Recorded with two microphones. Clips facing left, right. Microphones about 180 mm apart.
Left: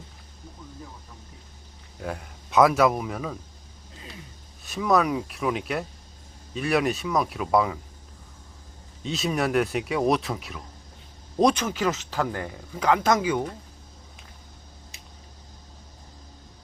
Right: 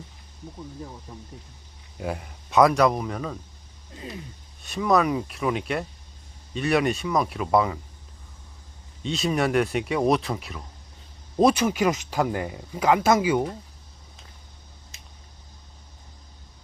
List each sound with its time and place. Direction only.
2.0 s speech: 5° right (ahead or behind)
4.6 s speech: centre (ahead or behind)
9.0 s speech: centre (ahead or behind)